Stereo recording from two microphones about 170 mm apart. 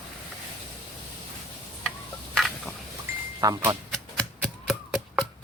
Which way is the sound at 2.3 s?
Centre (ahead or behind).